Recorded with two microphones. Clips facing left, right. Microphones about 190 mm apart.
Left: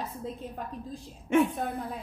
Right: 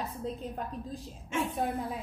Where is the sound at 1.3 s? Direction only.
60° left (ahead or behind).